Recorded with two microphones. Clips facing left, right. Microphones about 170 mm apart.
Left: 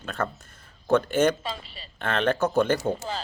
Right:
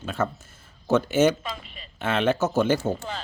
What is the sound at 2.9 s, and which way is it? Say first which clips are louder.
Speech: left 1 dB; 35° left (ahead or behind).